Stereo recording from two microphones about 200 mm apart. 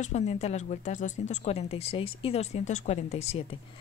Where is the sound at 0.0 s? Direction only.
35° left (ahead or behind).